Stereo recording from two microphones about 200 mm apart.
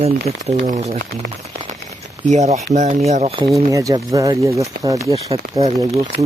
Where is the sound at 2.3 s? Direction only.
35° right (ahead or behind).